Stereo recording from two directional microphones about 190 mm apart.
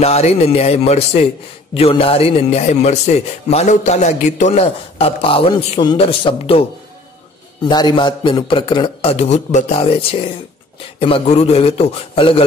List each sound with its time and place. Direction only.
0.0 s a man's voice: 35° left (ahead or behind)
7.6 s a man's voice: 25° left (ahead or behind)